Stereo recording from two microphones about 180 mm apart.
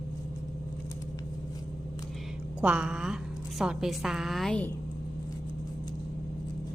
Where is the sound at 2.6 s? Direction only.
5° right (ahead or behind).